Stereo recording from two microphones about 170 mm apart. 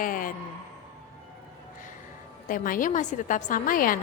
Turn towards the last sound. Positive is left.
turn(degrees=55)  # may be behind; listen again after turning